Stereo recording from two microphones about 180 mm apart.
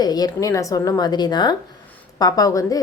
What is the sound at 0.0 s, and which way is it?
A woman's voice, 20° left (ahead or behind).